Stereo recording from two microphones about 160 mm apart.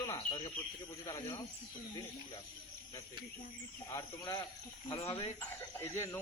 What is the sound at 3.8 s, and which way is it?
Speech, 25° left (ahead or behind).